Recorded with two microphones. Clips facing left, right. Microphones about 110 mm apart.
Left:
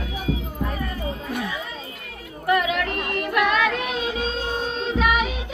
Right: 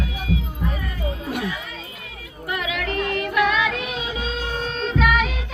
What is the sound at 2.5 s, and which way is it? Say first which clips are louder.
Music: left 5 dB; 50° left (ahead or behind).